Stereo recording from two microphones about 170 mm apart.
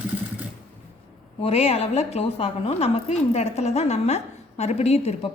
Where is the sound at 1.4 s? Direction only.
35° left (ahead or behind).